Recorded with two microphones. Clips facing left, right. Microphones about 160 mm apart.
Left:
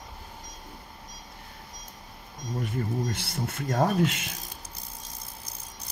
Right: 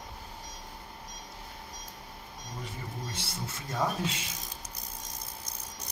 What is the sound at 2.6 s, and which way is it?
Speech, 55° left (ahead or behind).